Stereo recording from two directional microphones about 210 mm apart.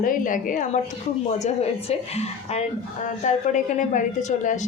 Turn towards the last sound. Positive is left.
turn(degrees=35)  # may be behind; listen again after turning